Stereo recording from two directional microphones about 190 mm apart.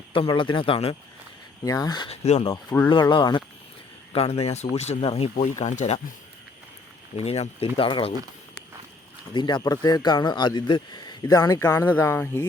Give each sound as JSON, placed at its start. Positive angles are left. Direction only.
{"t": 0.1, "sound": "speech", "side_deg": 25}
{"t": 1.6, "sound": "speech", "side_deg": 20}
{"t": 2.2, "sound": "speech", "side_deg": 30}
{"t": 2.6, "sound": "speech", "side_deg": 10}
{"t": 2.9, "sound": "speech", "side_deg": 25}
{"t": 7.3, "sound": "speech", "side_deg": 35}
{"t": 9.3, "sound": "speech", "side_deg": 25}